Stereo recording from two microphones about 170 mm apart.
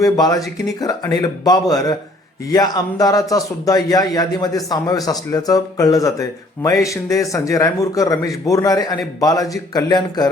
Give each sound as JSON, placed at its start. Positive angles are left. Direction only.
{"t": 0.0, "sound": "a man's voice", "side_deg": 20}